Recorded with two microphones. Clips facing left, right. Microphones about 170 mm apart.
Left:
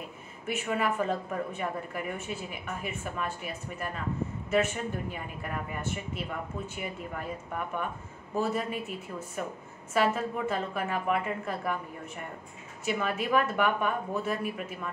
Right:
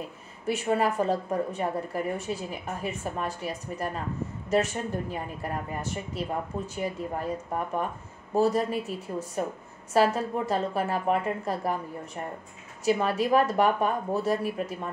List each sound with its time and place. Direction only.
0.5 s a woman's voice: 35° right (ahead or behind)